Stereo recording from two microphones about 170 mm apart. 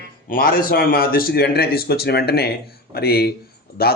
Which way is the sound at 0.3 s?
60° left (ahead or behind).